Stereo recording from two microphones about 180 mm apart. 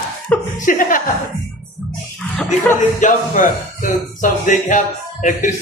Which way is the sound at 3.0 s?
45° left (ahead or behind).